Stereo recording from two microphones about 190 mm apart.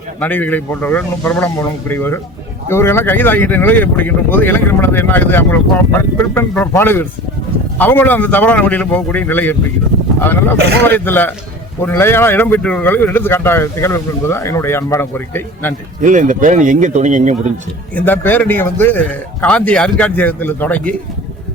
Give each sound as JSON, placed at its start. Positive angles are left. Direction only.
{"t": 0.2, "sound": "speech", "side_deg": 10}
{"t": 10.8, "sound": "speech", "side_deg": 10}
{"t": 16.0, "sound": "speech", "side_deg": -40}
{"t": 17.9, "sound": "speech", "side_deg": 10}